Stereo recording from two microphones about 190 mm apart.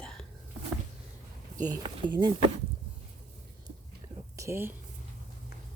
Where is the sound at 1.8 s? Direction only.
25° right (ahead or behind).